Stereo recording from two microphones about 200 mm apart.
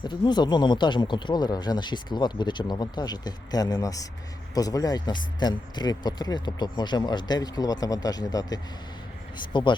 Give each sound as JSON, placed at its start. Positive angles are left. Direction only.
{"t": 0.0, "sound": "speech", "side_deg": 20}